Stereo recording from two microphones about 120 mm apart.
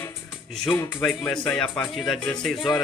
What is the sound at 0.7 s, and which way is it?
Speech, 15° left (ahead or behind).